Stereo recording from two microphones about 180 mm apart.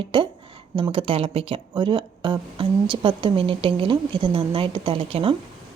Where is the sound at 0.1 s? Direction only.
30° right (ahead or behind).